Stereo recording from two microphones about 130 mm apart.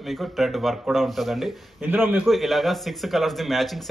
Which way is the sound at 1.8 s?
15° right (ahead or behind).